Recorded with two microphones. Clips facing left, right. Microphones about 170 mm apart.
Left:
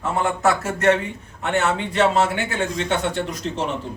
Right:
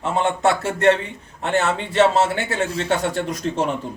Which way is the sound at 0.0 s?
25° right (ahead or behind).